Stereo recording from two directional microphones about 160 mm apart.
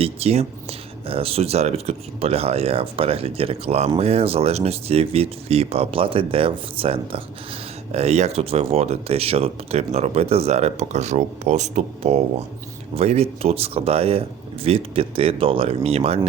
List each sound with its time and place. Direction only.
0.0 s speech: 40° right (ahead or behind)